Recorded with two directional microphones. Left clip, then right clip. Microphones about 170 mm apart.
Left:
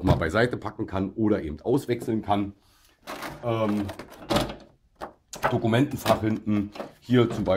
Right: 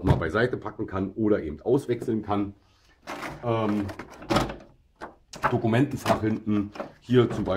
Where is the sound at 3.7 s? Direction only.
Centre (ahead or behind).